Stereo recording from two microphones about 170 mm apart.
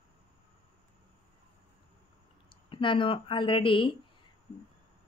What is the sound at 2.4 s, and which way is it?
Speech, 30° left (ahead or behind).